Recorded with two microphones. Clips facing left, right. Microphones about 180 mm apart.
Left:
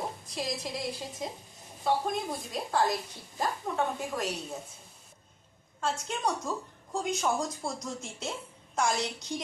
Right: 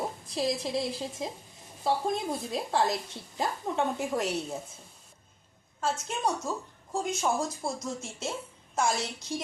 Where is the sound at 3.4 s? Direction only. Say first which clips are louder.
Right 1 dB; 25° right (ahead or behind).